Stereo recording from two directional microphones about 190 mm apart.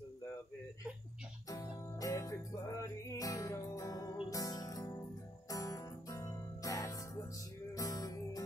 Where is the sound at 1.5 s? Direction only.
20° left (ahead or behind).